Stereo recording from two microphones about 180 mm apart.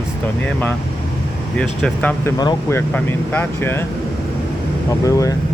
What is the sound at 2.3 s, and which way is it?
Speech, 20° left (ahead or behind).